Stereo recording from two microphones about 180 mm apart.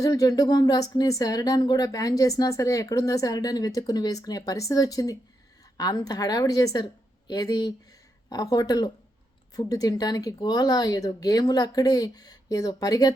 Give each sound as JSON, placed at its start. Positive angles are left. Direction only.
{"t": 0.0, "sound": "speech", "side_deg": 20}